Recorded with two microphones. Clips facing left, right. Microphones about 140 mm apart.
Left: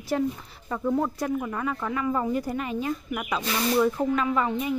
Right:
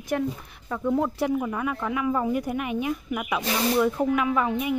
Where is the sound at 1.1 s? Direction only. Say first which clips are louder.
Right 3 dB; 20° right (ahead or behind).